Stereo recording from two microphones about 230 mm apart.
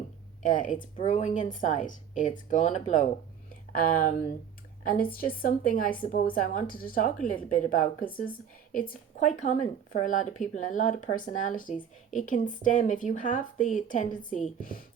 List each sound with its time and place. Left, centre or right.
0.4 s a woman's voice: left
9.1 s speech: left